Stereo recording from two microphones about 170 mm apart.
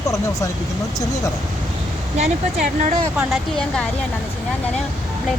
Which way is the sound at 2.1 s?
40° right (ahead or behind).